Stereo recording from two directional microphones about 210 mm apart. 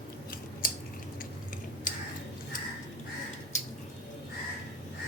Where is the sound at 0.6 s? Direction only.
40° left (ahead or behind).